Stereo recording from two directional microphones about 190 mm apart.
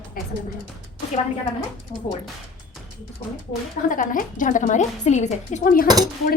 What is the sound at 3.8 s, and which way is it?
A woman's voice, 45° left (ahead or behind).